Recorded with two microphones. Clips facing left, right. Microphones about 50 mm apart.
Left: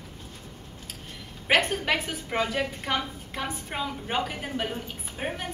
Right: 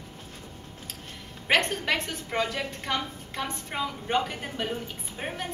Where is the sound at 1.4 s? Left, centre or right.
Centre.